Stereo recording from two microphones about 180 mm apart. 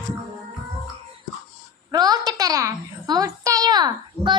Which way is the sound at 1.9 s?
20° right (ahead or behind).